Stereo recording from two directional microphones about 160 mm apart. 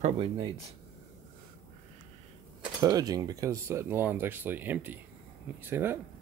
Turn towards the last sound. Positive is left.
turn(degrees=-15)  # may be behind; listen again after turning